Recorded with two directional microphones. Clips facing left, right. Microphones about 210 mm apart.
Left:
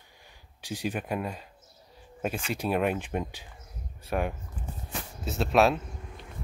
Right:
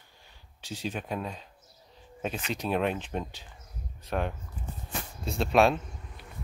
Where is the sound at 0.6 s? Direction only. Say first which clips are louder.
Left 3 dB; 10° left (ahead or behind).